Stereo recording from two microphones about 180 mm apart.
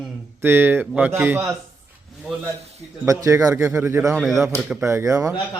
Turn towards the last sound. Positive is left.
turn(degrees=-15)  # may be behind; listen again after turning